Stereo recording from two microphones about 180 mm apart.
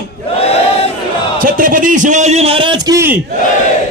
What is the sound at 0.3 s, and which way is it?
Battle cry, 35° left (ahead or behind).